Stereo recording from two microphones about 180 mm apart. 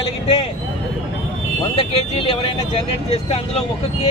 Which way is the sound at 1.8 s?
30° left (ahead or behind).